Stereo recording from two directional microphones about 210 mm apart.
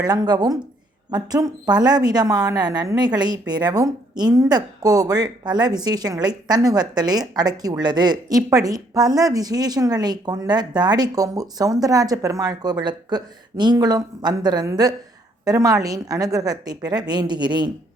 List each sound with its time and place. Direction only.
0.0 s a woman's voice: 20° right (ahead or behind)